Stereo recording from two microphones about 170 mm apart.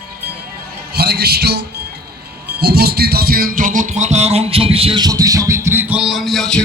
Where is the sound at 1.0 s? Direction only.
70° right (ahead or behind).